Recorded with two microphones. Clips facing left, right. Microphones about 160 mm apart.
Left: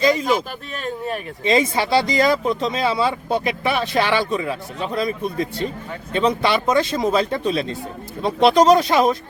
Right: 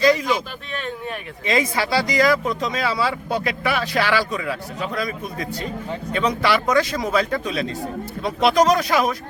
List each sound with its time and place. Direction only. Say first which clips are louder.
0.0 s speech: right 1 dB; 20° left (ahead or behind)
1.5 s speech: left 3 dB; 25° left (ahead or behind)